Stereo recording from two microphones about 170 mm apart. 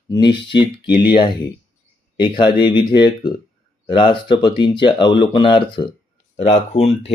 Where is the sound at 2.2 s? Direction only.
25° left (ahead or behind).